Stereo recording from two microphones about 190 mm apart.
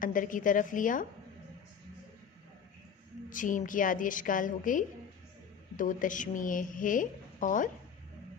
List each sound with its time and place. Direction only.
0.0 s a woman's voice: 45° left (ahead or behind)
3.2 s a woman's voice: 45° left (ahead or behind)